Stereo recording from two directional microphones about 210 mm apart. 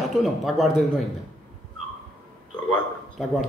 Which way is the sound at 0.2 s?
Centre (ahead or behind).